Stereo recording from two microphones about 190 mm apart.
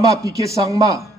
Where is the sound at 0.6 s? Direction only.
15° right (ahead or behind).